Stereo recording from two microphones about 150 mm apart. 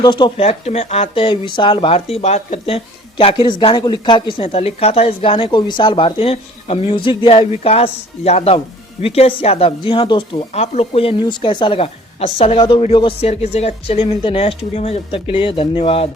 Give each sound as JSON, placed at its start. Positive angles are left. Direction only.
{"t": 0.0, "sound": "speech", "side_deg": 30}
{"t": 10.5, "sound": "speech", "side_deg": 45}